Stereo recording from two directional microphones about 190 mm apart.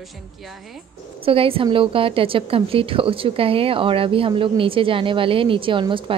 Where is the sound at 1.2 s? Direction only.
30° right (ahead or behind).